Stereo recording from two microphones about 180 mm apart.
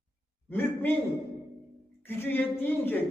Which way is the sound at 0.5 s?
10° left (ahead or behind).